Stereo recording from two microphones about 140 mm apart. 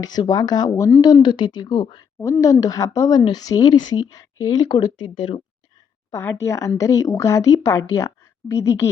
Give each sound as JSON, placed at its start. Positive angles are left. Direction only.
{"t": 0.0, "sound": "speech", "side_deg": 30}
{"t": 6.1, "sound": "speech", "side_deg": 20}